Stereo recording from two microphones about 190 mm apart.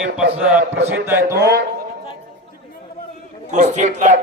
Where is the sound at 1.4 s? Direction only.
60° right (ahead or behind).